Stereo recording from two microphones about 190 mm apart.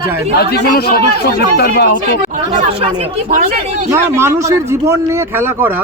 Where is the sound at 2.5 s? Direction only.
30° right (ahead or behind).